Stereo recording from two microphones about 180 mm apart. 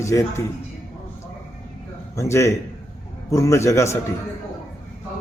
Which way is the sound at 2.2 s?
15° left (ahead or behind).